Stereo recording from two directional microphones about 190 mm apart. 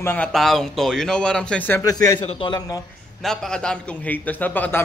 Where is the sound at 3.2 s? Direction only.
Centre (ahead or behind).